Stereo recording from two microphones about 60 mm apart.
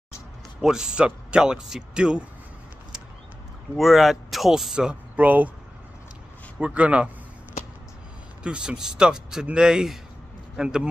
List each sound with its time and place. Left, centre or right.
0.6 s speech: centre
3.7 s speech: centre
5.1 s speech: right
6.6 s a man's voice: right
8.5 s a man's voice: centre